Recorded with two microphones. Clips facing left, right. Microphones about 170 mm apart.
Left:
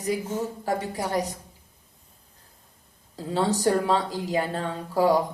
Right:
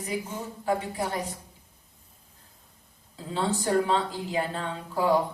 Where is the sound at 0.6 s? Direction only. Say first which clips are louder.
Even; 40° left (ahead or behind).